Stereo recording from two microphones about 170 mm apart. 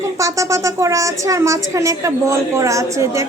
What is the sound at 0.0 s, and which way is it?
A woman's voice, 20° right (ahead or behind).